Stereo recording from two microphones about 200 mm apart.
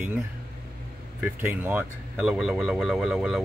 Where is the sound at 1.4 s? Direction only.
5° right (ahead or behind).